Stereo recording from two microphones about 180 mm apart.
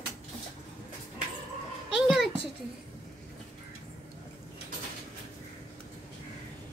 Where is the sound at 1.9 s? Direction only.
Centre (ahead or behind).